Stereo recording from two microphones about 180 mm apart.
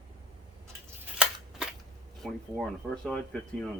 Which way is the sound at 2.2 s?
5° left (ahead or behind).